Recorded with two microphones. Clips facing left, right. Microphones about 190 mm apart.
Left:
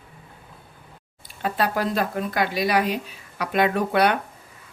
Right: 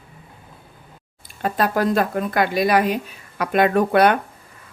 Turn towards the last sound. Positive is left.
turn(degrees=-50)  # may be behind; listen again after turning